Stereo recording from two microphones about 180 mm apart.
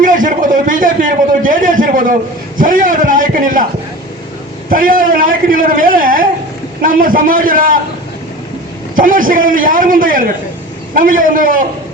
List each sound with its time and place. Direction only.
0.0 s a sound: 45° right (ahead or behind)
2.6 s a man's voice: 50° right (ahead or behind)
4.7 s a man's voice: 50° right (ahead or behind)
9.0 s a man's voice: 50° right (ahead or behind)